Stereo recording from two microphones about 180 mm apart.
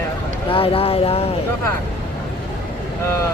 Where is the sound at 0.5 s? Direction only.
30° left (ahead or behind).